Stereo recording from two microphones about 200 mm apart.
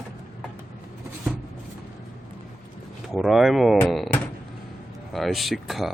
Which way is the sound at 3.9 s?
Centre (ahead or behind).